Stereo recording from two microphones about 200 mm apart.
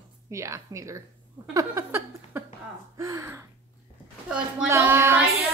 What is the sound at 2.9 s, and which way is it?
Speech, 15° right (ahead or behind).